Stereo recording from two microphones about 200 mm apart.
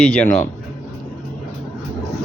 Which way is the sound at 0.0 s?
5° left (ahead or behind).